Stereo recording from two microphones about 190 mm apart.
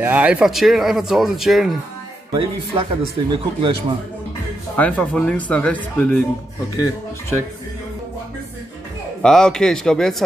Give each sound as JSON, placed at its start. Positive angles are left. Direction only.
{"t": 0.0, "sound": "speech", "side_deg": -10}
{"t": 2.3, "sound": "speech", "side_deg": -30}
{"t": 4.7, "sound": "speech", "side_deg": 5}
{"t": 9.2, "sound": "speech", "side_deg": 5}